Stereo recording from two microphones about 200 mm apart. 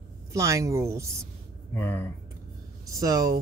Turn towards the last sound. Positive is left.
turn(degrees=-15)  # may be behind; listen again after turning